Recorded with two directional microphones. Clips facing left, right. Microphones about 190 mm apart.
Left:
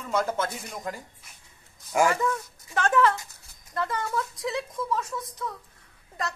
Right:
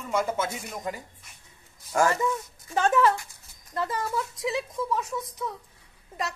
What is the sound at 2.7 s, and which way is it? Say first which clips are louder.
Speech: right 1 dB; 15° right (ahead or behind).